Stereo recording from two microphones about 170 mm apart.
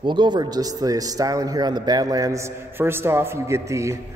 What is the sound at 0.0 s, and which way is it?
Speech, 25° right (ahead or behind).